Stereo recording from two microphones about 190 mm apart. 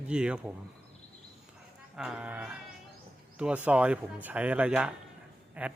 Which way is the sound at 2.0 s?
5° right (ahead or behind).